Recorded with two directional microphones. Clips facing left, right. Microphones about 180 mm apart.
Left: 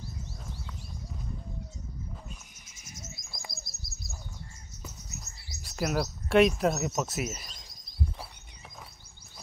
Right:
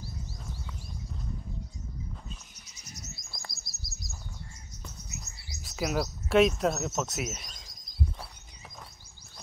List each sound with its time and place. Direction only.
2.5 s cricket: 50° left (ahead or behind)
3.5 s bird: 55° left (ahead or behind)
4.8 s bird: centre (ahead or behind)